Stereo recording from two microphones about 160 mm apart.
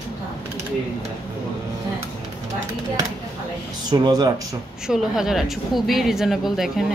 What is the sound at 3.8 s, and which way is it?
Speech, 25° right (ahead or behind).